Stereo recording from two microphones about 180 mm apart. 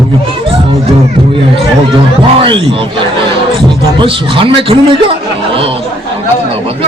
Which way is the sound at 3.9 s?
30° right (ahead or behind).